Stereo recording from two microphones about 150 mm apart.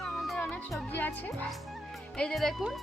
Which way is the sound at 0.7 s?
10° left (ahead or behind).